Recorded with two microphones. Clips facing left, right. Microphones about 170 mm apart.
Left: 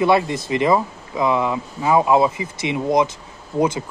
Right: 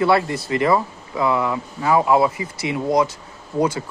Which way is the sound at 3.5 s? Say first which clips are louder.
Left 1 dB; 10° right (ahead or behind).